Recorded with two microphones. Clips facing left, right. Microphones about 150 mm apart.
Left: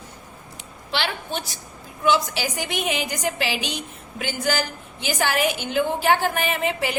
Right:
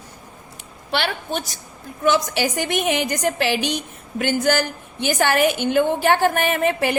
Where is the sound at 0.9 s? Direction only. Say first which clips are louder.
Right 3 dB; 55° right (ahead or behind).